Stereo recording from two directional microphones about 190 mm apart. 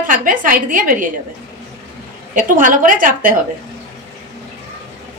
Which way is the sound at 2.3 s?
45° right (ahead or behind).